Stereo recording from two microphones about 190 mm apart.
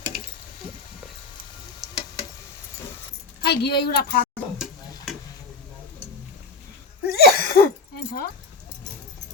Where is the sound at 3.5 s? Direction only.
55° left (ahead or behind).